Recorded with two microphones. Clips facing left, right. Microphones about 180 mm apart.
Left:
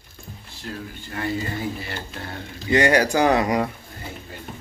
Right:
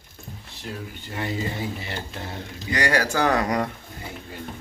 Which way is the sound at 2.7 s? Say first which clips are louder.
Left 6 dB; 20° left (ahead or behind).